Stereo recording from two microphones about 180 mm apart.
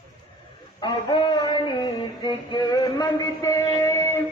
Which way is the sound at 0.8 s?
25° left (ahead or behind).